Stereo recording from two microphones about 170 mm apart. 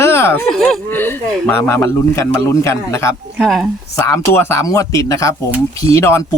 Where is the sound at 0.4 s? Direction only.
5° left (ahead or behind).